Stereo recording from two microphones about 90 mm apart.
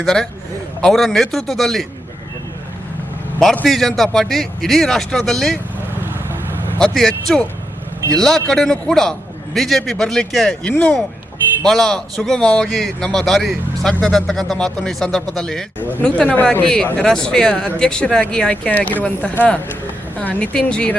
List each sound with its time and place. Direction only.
0.0 s a man's voice: 5° left (ahead or behind)
3.7 s a man's voice: centre (ahead or behind)
6.7 s a man's voice: 5° left (ahead or behind)
15.8 s speech: 20° left (ahead or behind)